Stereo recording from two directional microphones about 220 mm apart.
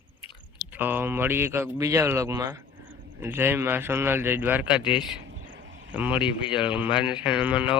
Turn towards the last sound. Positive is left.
turn(degrees=-5)  # may be behind; listen again after turning